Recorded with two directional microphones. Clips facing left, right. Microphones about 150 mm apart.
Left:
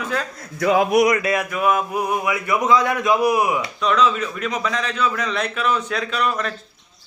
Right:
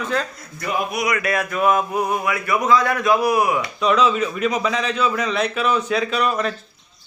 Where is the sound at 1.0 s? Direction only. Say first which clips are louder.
Left 4 dB; 30° left (ahead or behind).